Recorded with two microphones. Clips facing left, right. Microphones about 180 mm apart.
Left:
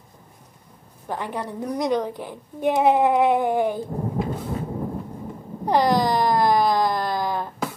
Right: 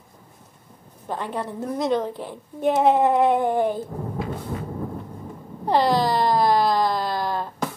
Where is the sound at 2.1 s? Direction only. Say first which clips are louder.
Even; 10° left (ahead or behind).